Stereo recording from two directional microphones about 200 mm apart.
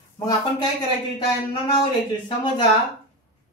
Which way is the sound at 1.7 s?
25° left (ahead or behind).